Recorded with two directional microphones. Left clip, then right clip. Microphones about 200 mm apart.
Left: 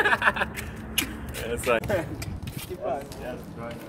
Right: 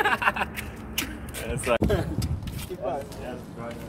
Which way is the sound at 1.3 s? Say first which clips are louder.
Left 3 dB; 20° right (ahead or behind).